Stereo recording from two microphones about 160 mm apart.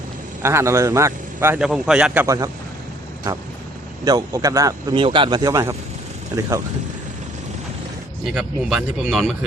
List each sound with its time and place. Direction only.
0.4 s a man's voice: 15° right (ahead or behind)
1.6 s speech: 5° right (ahead or behind)
2.2 s speech: 20° right (ahead or behind)
4.0 s speech: 25° right (ahead or behind)
8.2 s speech: 5° right (ahead or behind)